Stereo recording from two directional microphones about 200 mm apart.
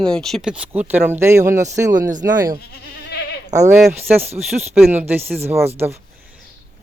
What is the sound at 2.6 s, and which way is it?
Goat, 55° left (ahead or behind).